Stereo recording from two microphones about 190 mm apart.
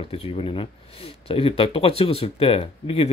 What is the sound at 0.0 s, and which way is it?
Speech, 30° left (ahead or behind).